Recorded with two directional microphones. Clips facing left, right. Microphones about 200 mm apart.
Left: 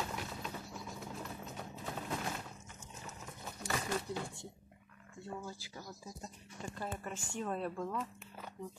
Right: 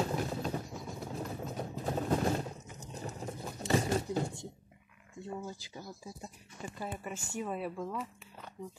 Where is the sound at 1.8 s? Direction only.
40° right (ahead or behind).